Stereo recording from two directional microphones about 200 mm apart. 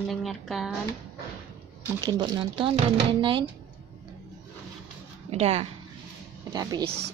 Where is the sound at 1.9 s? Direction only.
20° right (ahead or behind).